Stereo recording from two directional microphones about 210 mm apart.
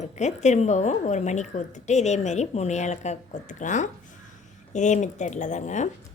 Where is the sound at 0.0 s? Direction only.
35° left (ahead or behind).